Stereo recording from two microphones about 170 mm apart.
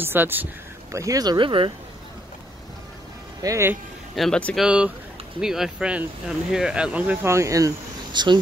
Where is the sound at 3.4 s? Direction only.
15° right (ahead or behind).